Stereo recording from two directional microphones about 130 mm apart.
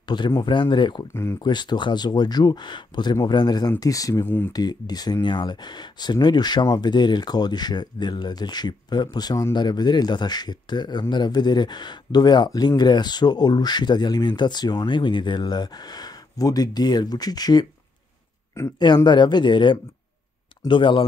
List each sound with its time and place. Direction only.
0.4 s speech: 35° left (ahead or behind)
19.0 s speech: 35° left (ahead or behind)